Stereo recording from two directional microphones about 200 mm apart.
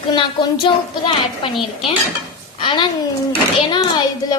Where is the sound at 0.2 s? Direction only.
25° left (ahead or behind).